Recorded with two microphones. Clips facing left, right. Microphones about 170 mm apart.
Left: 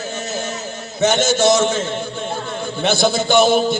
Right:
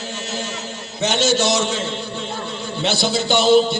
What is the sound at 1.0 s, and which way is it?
Speech, 50° left (ahead or behind).